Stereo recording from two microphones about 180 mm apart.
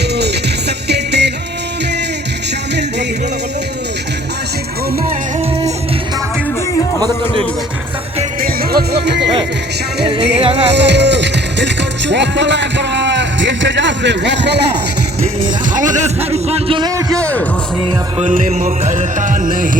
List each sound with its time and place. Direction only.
0.9 s music: 70° right (ahead or behind)
8.4 s music: 60° right (ahead or behind)
10.4 s a man's voice: 35° right (ahead or behind)
10.7 s music: 70° right (ahead or behind)
15.7 s a man's voice: 45° right (ahead or behind); by 16.9 s 30° right (ahead or behind)
17.1 s speech: 5° left (ahead or behind)
18.2 s music: 40° right (ahead or behind)